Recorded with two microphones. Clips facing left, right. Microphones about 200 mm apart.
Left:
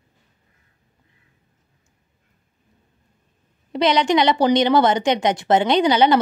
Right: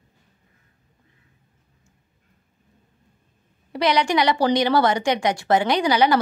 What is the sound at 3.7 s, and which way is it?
A woman's voice, 20° left (ahead or behind).